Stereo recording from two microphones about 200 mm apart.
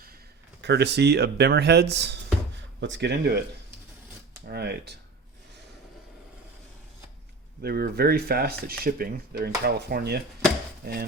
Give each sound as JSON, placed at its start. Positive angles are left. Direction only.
{"t": 0.6, "sound": "speech", "side_deg": -60}
{"t": 4.4, "sound": "speech", "side_deg": -55}
{"t": 7.6, "sound": "speech", "side_deg": -50}